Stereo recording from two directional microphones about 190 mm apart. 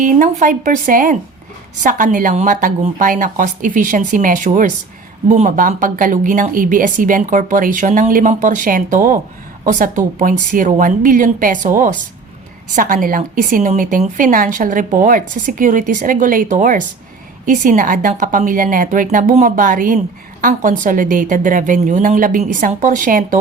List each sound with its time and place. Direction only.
0.0 s speech: 45° right (ahead or behind)